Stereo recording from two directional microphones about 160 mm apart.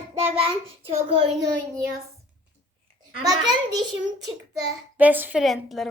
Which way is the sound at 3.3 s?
25° right (ahead or behind).